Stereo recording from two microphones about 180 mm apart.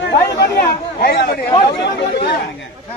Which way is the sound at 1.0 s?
65° left (ahead or behind).